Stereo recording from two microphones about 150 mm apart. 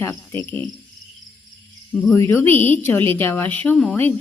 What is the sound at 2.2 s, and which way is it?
A woman's voice, 15° left (ahead or behind).